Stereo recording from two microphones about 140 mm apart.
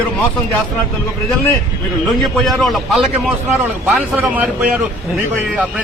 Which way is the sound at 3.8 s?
10° right (ahead or behind).